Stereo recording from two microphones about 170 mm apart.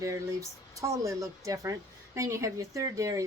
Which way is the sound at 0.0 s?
20° right (ahead or behind).